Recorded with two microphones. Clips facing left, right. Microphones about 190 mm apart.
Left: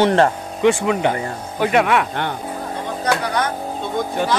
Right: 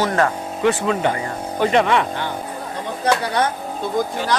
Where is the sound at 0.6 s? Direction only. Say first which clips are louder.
Left 2 dB; 15° left (ahead or behind).